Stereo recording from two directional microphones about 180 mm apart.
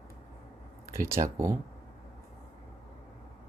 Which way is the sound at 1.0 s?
15° right (ahead or behind).